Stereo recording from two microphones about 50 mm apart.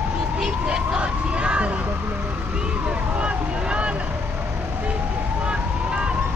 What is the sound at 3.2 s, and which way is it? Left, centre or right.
Vehicle, right.